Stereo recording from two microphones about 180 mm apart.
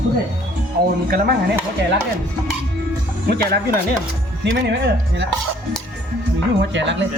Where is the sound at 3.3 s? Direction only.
60° right (ahead or behind).